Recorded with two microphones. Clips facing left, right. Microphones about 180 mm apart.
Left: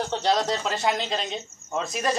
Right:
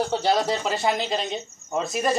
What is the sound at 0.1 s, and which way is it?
Speech, 5° right (ahead or behind).